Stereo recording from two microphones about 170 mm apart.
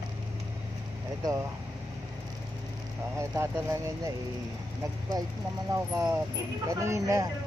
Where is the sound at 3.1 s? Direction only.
15° right (ahead or behind).